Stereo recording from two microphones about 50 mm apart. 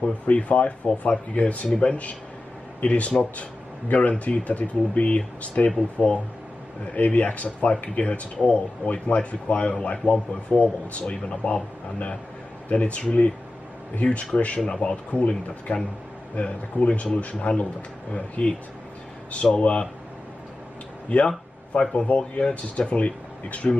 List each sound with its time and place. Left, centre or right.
0.0 s speech: left
21.9 s speech: left